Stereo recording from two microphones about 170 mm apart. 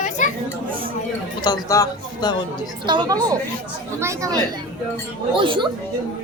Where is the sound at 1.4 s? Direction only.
25° left (ahead or behind).